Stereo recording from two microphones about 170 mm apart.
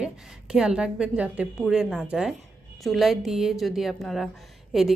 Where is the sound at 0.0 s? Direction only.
5° right (ahead or behind).